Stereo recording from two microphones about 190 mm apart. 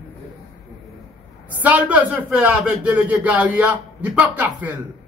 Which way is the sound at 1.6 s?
5° right (ahead or behind).